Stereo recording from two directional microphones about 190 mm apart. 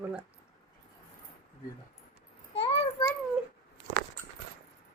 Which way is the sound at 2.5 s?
30° left (ahead or behind).